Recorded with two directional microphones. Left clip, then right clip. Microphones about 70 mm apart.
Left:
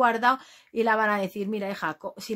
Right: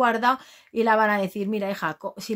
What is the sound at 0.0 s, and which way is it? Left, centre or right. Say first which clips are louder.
A woman's voice: right 1 dB; right.